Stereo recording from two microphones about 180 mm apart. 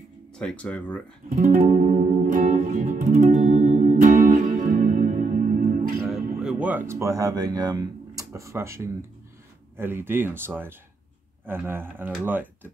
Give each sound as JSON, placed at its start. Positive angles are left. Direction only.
{"t": 0.4, "sound": "speech", "side_deg": 5}
{"t": 1.3, "sound": "music", "side_deg": -45}
{"t": 6.0, "sound": "a sound", "side_deg": -5}
{"t": 9.8, "sound": "speech", "side_deg": -15}